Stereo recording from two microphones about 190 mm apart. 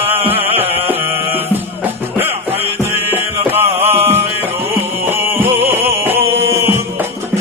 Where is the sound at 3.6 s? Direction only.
30° right (ahead or behind).